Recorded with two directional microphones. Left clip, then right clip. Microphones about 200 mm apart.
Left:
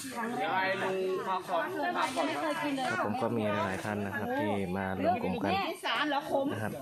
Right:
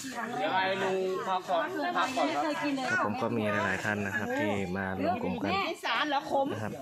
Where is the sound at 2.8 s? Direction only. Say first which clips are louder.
Right 4 dB; 15° right (ahead or behind).